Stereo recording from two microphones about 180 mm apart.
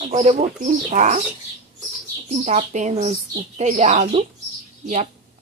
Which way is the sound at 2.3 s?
40° right (ahead or behind).